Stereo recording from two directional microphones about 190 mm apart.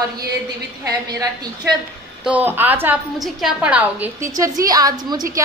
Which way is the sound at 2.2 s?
10° right (ahead or behind).